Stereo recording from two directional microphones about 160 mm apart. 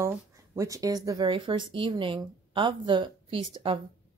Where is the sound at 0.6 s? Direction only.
20° right (ahead or behind).